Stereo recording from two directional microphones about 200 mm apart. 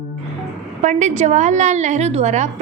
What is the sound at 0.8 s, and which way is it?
A woman's voice, 35° right (ahead or behind).